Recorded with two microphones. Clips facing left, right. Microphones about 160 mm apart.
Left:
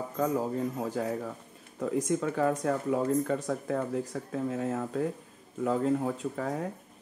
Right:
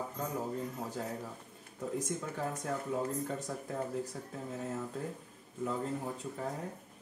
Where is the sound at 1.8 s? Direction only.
90° left.